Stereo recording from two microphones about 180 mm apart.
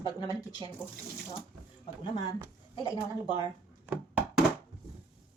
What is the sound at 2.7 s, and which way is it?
Speech, 25° left (ahead or behind).